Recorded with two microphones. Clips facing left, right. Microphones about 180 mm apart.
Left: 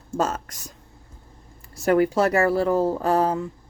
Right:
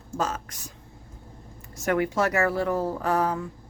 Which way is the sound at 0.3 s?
40° left (ahead or behind).